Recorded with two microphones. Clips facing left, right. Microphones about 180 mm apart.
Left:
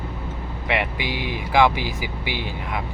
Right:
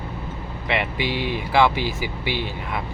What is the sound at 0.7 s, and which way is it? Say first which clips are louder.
Speech: right 1 dB; 15° left (ahead or behind).